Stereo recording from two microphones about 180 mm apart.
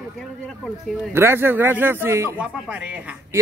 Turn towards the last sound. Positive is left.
turn(degrees=-10)  # may be behind; listen again after turning